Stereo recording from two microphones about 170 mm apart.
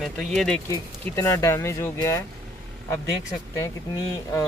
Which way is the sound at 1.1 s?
15° left (ahead or behind).